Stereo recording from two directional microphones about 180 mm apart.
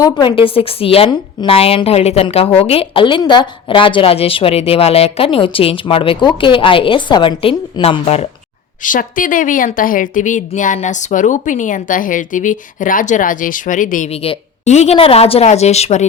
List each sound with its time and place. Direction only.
0.0 s a woman's voice: 25° left (ahead or behind)
8.8 s a woman's voice: 50° left (ahead or behind)
14.1 s a woman's voice: 35° left (ahead or behind)